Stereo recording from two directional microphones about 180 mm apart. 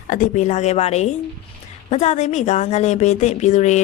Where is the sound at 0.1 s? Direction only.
45° left (ahead or behind).